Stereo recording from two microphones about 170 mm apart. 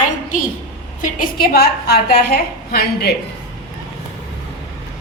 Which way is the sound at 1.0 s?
60° left (ahead or behind).